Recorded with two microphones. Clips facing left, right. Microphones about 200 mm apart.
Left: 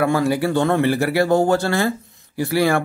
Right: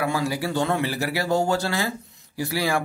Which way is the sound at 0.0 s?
55° left (ahead or behind).